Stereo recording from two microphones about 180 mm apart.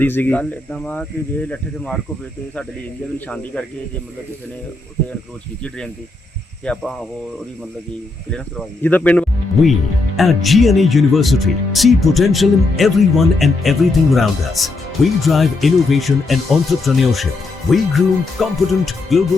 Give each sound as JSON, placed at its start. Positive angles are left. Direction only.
{"t": 0.0, "sound": "speech", "side_deg": 10}
{"t": 3.2, "sound": "speech", "side_deg": 5}
{"t": 6.7, "sound": "speech", "side_deg": 5}
{"t": 8.3, "sound": "speech", "side_deg": 5}